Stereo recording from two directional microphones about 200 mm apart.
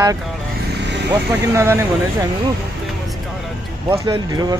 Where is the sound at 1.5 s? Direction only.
15° right (ahead or behind).